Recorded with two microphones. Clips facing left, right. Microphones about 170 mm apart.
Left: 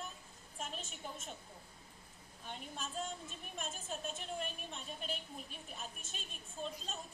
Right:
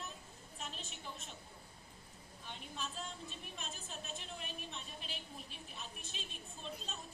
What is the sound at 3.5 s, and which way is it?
Speech, 45° left (ahead or behind).